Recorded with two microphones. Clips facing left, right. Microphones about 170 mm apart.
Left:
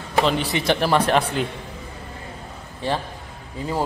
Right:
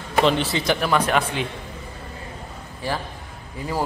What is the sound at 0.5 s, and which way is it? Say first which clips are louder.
Speech: left 2 dB; 25° left (ahead or behind).